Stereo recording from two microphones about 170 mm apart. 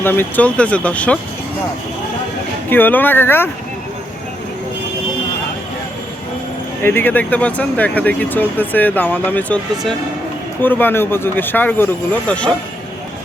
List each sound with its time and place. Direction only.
0.0 s speech: 10° left (ahead or behind)
2.6 s speech: 10° left (ahead or behind)
6.8 s speech: 10° left (ahead or behind)